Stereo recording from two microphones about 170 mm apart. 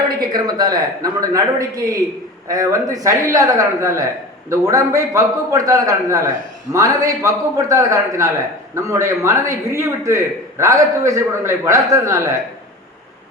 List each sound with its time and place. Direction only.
0.2 s a man's voice: 25° right (ahead or behind)